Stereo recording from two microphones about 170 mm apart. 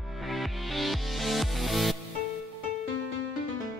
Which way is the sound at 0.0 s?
Centre (ahead or behind).